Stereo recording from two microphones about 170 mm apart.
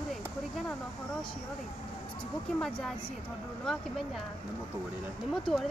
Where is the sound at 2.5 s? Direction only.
5° left (ahead or behind).